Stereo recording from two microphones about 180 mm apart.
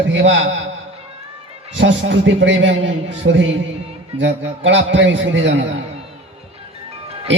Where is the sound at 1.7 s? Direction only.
90° right.